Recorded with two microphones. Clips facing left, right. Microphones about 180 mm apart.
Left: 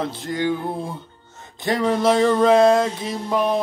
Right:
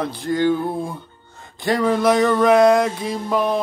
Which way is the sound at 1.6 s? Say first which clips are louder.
Right 1 dB; 25° left (ahead or behind).